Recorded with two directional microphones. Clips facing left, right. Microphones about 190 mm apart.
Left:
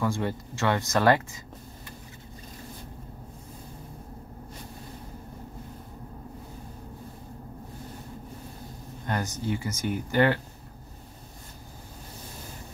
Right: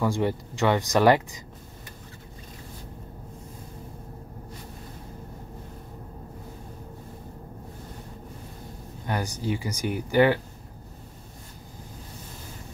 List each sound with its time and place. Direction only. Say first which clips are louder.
0.0 s speech: right 3 dB; 15° right (ahead or behind)
9.0 s speech: right 1 dB; 10° right (ahead or behind)